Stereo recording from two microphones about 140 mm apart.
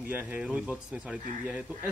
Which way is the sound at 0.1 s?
10° right (ahead or behind).